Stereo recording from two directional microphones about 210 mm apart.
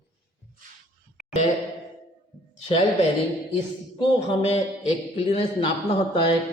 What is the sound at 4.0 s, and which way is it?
Speech, 25° left (ahead or behind).